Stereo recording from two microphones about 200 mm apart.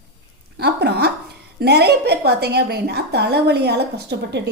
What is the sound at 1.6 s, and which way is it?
A woman's voice, 55° right (ahead or behind).